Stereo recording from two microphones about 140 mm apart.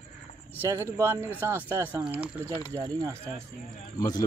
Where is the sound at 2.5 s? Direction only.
20° left (ahead or behind).